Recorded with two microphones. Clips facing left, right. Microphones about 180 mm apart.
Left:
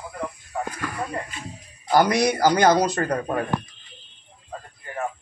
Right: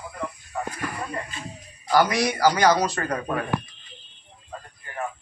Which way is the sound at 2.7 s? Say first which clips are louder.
Left 3 dB; 35° left (ahead or behind).